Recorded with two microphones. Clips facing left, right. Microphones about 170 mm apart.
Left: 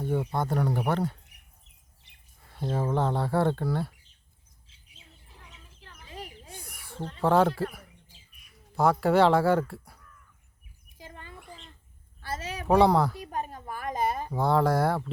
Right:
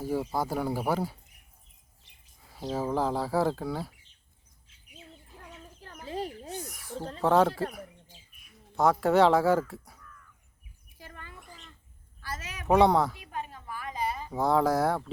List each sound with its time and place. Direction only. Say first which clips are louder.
0.0 s speech: left 1 dB; 5° right (ahead or behind)
2.0 s bird: left 1 dB; 65° left (ahead or behind)
2.5 s speech: left 1 dB; centre (ahead or behind)
4.9 s bird: right 7 dB; 50° right (ahead or behind)
6.7 s snake: right 8 dB; centre (ahead or behind)
7.2 s speech: left 1 dB; centre (ahead or behind)
10.9 s a sound: left 2 dB; 20° left (ahead or behind)
12.6 s speech: left 1 dB; centre (ahead or behind)
13.1 s a sound: left 4 dB; 40° left (ahead or behind)
14.3 s speech: even; centre (ahead or behind)